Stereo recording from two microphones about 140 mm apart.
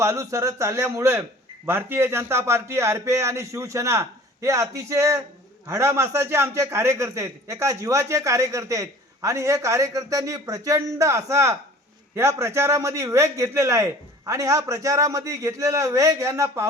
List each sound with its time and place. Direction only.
0.0 s a man's voice: 20° right (ahead or behind)